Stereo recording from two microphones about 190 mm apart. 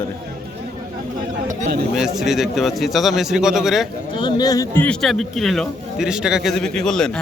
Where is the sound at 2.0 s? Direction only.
Centre (ahead or behind).